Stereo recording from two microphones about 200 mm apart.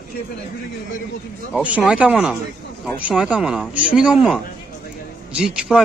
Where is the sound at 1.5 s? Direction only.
5° right (ahead or behind).